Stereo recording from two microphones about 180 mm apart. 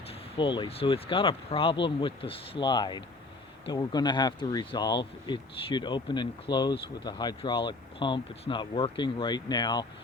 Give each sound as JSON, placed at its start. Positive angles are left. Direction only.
{"t": 0.3, "sound": "speech", "side_deg": 25}